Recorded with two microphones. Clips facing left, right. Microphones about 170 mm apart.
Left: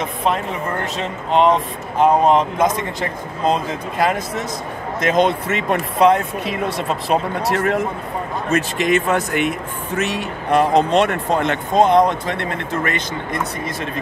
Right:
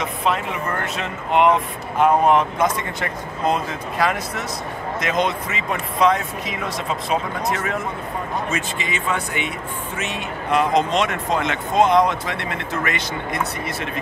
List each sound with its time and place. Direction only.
0.3 s speech: 35° left (ahead or behind)
5.1 s speech: 55° left (ahead or behind)
9.0 s speech: 45° left (ahead or behind)
12.0 s speech: 45° left (ahead or behind)